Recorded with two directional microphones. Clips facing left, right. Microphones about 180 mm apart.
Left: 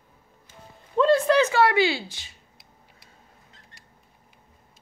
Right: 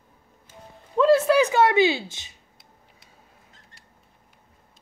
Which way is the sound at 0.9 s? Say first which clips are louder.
Right 1 dB; 5° right (ahead or behind).